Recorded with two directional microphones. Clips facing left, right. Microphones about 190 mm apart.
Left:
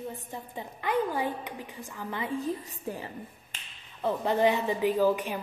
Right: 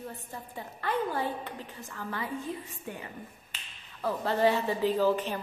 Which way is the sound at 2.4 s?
40° left (ahead or behind).